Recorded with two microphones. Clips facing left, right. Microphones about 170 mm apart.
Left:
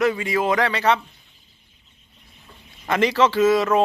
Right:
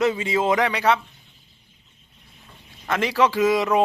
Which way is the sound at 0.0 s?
20° right (ahead or behind).